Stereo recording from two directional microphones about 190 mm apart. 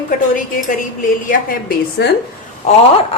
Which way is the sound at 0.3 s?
45° left (ahead or behind).